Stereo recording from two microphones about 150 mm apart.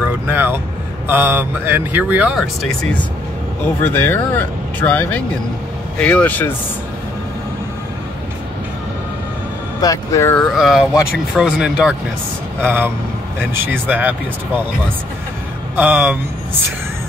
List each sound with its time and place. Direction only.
0.3 s speech: 15° right (ahead or behind); by 3.0 s centre (ahead or behind)
3.6 s speech: 15° left (ahead or behind)
9.8 s speech: 25° left (ahead or behind)
10.5 s speech: centre (ahead or behind)
15.7 s speech: 10° right (ahead or behind)